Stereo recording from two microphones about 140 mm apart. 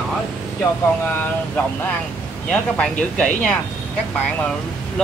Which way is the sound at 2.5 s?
5° left (ahead or behind).